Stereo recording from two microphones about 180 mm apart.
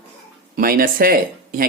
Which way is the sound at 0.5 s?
55° right (ahead or behind).